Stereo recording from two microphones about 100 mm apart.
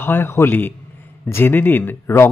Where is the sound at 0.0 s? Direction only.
25° left (ahead or behind).